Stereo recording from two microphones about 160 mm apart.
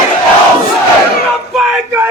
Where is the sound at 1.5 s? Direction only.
Centre (ahead or behind).